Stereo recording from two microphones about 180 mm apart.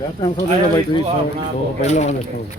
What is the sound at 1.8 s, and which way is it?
Speech, 40° left (ahead or behind).